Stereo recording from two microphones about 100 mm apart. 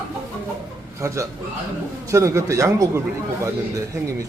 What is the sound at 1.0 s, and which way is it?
Speech, 30° right (ahead or behind).